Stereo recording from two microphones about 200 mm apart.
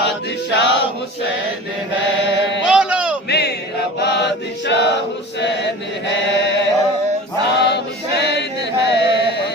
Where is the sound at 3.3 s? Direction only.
55° left (ahead or behind).